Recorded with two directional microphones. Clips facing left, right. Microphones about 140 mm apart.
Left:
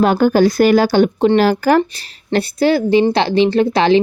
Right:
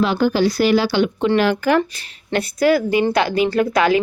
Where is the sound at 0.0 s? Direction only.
50° left (ahead or behind).